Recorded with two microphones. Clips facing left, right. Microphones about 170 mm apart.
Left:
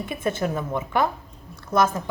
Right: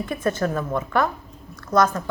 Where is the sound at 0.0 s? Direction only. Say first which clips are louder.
Right 3 dB; 25° left (ahead or behind).